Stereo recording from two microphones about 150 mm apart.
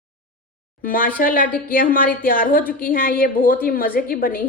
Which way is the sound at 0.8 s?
70° left (ahead or behind).